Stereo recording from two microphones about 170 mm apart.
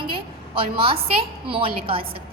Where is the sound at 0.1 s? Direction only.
30° right (ahead or behind).